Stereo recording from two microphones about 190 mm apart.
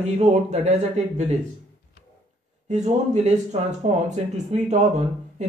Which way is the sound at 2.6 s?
40° right (ahead or behind).